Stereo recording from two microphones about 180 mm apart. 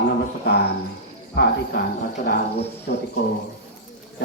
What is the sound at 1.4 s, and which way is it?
Speech, 70° left (ahead or behind).